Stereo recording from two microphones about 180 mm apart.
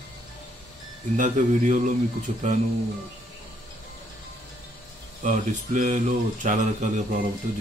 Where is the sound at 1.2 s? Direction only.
45° right (ahead or behind).